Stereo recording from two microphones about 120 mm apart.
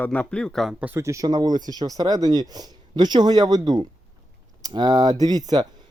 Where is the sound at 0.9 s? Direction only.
25° right (ahead or behind).